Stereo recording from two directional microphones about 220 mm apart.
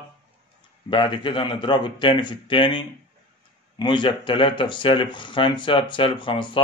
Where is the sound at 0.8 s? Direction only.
25° left (ahead or behind).